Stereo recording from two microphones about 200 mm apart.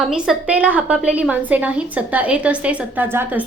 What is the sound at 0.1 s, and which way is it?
A woman's voice, 5° right (ahead or behind).